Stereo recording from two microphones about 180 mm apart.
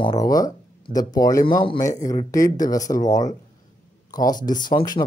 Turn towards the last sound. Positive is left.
turn(degrees=25)  # may be behind; listen again after turning